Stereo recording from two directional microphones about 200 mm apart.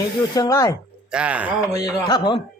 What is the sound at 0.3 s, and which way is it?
Speech, 15° left (ahead or behind).